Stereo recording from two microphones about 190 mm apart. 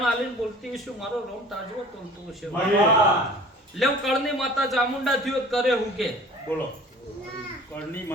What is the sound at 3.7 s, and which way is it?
A man's voice, centre (ahead or behind).